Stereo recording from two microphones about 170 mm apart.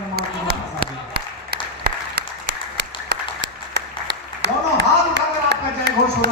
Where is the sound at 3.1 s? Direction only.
75° right (ahead or behind).